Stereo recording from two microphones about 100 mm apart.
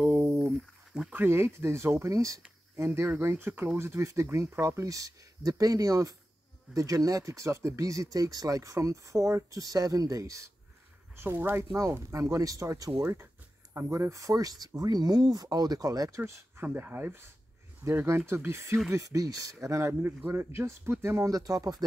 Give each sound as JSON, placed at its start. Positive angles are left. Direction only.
{"t": 0.0, "sound": "a sound", "side_deg": -20}
{"t": 0.5, "sound": "a sound", "side_deg": -5}
{"t": 1.1, "sound": "speech", "side_deg": -20}
{"t": 11.1, "sound": "speech", "side_deg": -20}
{"t": 16.2, "sound": "speech", "side_deg": -25}
{"t": 21.3, "sound": "speech", "side_deg": -35}